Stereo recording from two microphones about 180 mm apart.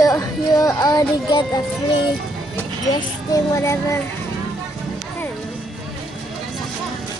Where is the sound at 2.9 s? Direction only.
20° left (ahead or behind).